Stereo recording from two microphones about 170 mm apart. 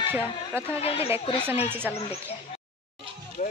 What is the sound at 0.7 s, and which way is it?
Speech, 35° left (ahead or behind).